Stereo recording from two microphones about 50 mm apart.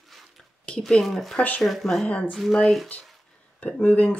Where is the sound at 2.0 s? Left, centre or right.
Left.